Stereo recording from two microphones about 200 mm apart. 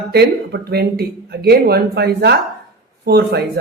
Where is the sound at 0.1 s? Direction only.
55° right (ahead or behind).